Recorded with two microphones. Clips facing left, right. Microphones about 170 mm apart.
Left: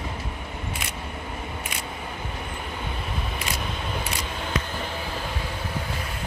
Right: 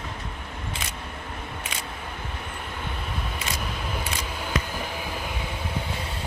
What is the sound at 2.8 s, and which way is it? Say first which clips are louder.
Vehicle: even; centre (ahead or behind).